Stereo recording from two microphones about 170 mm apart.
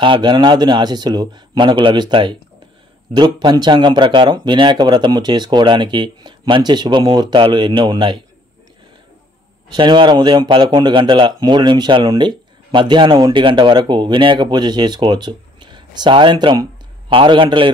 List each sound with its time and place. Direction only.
0.0 s speech: 30° right (ahead or behind)
9.8 s a man's voice: 30° right (ahead or behind)